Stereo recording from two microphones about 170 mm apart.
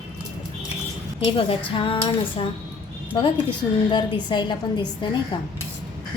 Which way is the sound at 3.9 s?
25° left (ahead or behind).